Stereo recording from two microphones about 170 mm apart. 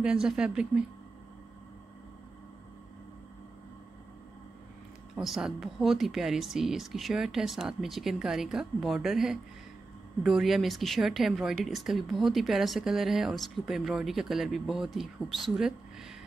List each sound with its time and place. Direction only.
0.0 s a woman's voice: 5° right (ahead or behind)
5.1 s a woman's voice: centre (ahead or behind)